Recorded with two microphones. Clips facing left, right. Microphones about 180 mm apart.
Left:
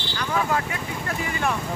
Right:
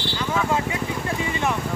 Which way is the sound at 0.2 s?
20° right (ahead or behind).